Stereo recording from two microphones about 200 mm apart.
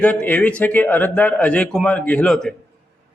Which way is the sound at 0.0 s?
5° left (ahead or behind).